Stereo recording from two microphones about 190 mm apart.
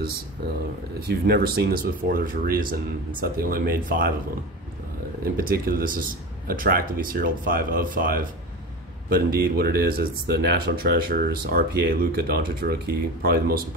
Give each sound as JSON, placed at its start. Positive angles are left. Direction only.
{"t": 1.2, "sound": "speech", "side_deg": -55}
{"t": 5.2, "sound": "speech", "side_deg": -50}